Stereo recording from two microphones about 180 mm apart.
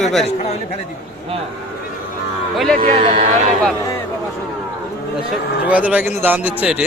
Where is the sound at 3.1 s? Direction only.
45° right (ahead or behind).